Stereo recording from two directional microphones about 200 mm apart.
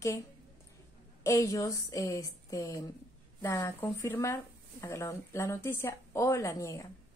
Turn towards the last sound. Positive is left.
turn(degrees=15)  # may be behind; listen again after turning